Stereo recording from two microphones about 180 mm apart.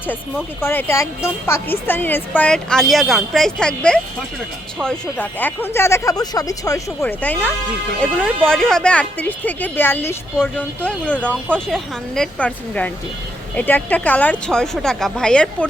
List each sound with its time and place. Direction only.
0.6 s speech: 10° left (ahead or behind)